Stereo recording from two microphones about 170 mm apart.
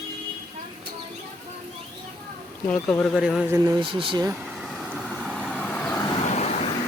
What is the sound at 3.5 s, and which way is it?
Speech, 15° right (ahead or behind).